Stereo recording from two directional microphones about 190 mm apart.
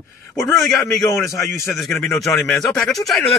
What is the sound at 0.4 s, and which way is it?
Speech, 15° left (ahead or behind).